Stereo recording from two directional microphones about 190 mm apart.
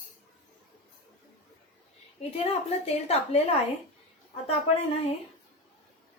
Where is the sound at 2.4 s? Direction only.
35° left (ahead or behind).